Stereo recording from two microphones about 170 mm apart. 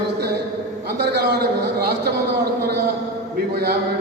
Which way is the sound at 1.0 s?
70° right (ahead or behind).